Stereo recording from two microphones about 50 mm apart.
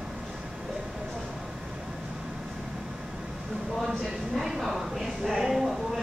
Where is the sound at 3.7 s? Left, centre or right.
Centre.